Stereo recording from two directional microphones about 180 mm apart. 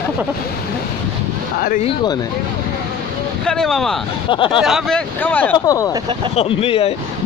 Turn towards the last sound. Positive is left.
turn(degrees=35)  # may be behind; listen again after turning